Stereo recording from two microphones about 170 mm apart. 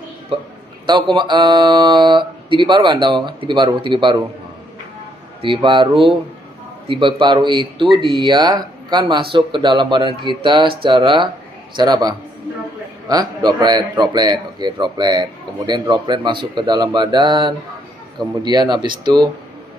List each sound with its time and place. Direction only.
0.3 s a man's voice: 30° right (ahead or behind)
5.4 s a man's voice: 30° right (ahead or behind)